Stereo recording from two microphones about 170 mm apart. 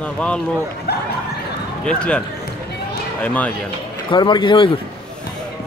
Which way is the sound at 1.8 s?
5° left (ahead or behind).